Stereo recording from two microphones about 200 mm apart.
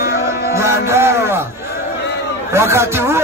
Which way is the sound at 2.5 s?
15° right (ahead or behind).